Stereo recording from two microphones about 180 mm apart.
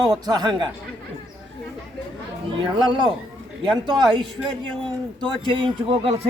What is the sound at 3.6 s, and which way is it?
Speech, 25° right (ahead or behind).